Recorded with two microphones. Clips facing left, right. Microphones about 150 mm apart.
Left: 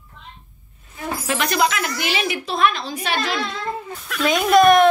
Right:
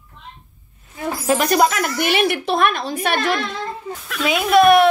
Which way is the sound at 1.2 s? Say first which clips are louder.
Right 5 dB; 40° right (ahead or behind).